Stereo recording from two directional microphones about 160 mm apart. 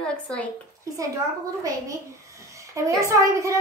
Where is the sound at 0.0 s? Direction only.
5° left (ahead or behind).